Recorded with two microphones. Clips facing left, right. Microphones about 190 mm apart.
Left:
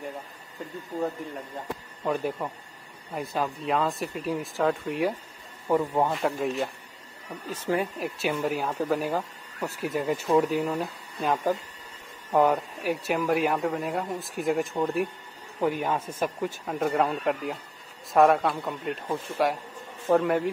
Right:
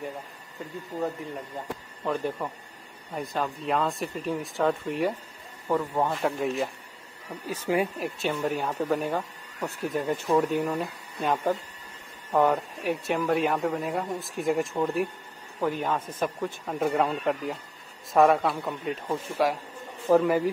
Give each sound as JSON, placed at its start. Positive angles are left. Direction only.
{"t": 2.0, "sound": "speech", "side_deg": 10}
{"t": 5.7, "sound": "speech", "side_deg": 15}
{"t": 6.0, "sound": "speech", "side_deg": 0}
{"t": 7.4, "sound": "speech", "side_deg": -10}
{"t": 8.0, "sound": "speech", "side_deg": 0}